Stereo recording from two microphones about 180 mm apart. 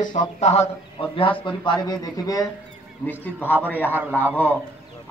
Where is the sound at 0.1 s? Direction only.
35° left (ahead or behind); by 4.3 s 10° left (ahead or behind).